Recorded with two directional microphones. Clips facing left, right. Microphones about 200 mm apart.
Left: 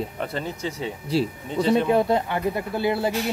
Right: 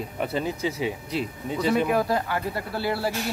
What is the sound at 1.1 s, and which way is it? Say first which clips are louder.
Speech: left 4 dB; 30° left (ahead or behind).